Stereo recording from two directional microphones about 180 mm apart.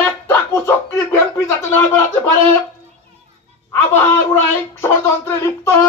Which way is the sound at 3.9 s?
10° left (ahead or behind).